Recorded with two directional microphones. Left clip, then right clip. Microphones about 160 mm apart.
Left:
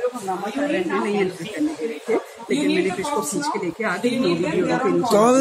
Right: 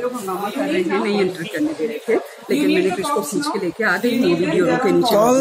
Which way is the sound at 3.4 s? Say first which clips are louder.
Right 3 dB; 15° right (ahead or behind).